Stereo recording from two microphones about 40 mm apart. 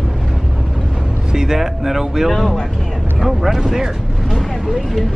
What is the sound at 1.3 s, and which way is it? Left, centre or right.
Speech, centre.